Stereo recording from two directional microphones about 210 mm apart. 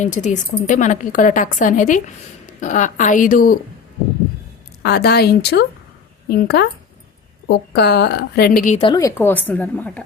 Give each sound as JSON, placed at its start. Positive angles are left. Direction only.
{"t": 0.0, "sound": "a woman's voice", "side_deg": 35}
{"t": 4.8, "sound": "a woman's voice", "side_deg": 50}
{"t": 8.8, "sound": "a woman's voice", "side_deg": 20}